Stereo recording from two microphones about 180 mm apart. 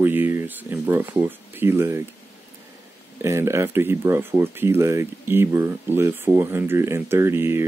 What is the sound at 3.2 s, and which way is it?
Speech, 15° right (ahead or behind).